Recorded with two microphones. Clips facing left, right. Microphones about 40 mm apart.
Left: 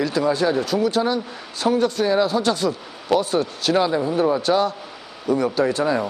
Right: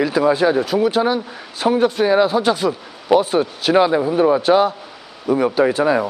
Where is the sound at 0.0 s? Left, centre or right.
Centre.